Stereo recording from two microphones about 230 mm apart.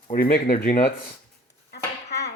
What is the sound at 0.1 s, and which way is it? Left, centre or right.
Speech, left.